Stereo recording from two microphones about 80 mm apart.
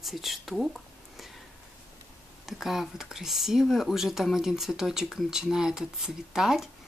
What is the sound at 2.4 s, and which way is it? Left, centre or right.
Speech, centre.